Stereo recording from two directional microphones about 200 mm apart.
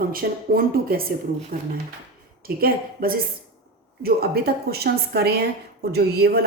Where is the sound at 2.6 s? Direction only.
45° right (ahead or behind).